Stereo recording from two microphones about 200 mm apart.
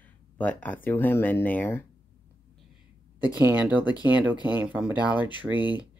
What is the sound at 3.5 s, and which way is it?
Speech, 10° right (ahead or behind).